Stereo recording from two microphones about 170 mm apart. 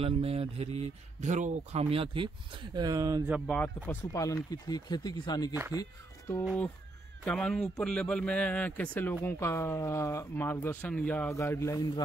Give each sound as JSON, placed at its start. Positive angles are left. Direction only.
{"t": 0.0, "sound": "speech", "side_deg": -35}
{"t": 3.4, "sound": "speech", "side_deg": 10}
{"t": 6.4, "sound": "a man's voice", "side_deg": 5}